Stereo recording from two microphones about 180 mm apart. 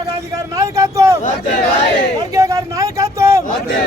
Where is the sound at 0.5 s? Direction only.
20° right (ahead or behind).